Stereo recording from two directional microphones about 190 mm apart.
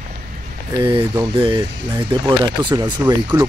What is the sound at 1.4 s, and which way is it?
Speech, 25° right (ahead or behind).